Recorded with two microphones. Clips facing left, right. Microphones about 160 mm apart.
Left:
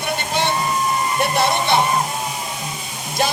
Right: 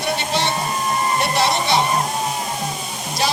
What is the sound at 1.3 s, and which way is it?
Hair dryer, 55° left (ahead or behind).